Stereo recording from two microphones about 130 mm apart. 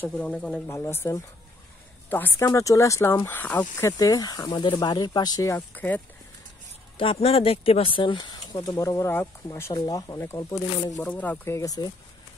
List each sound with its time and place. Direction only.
0.3 s speech: centre (ahead or behind)
0.7 s speech: 20° left (ahead or behind)
7.0 s speech: 45° left (ahead or behind); by 10.6 s 25° left (ahead or behind)
11.0 s speech: 10° left (ahead or behind); by 11.9 s 25° left (ahead or behind)